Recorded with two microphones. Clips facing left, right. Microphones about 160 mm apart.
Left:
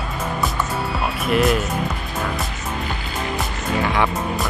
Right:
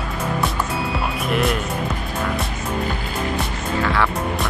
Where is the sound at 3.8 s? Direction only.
15° left (ahead or behind).